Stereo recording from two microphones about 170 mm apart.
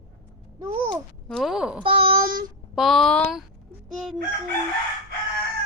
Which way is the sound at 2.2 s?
55° right (ahead or behind).